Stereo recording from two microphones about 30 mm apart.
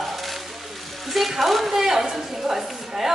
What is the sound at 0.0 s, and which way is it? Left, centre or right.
Frying, centre.